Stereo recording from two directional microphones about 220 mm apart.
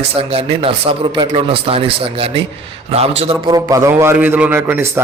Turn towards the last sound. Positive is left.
turn(degrees=-10)  # may be behind; listen again after turning